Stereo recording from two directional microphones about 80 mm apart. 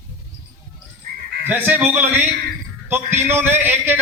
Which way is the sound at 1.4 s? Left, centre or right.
Right.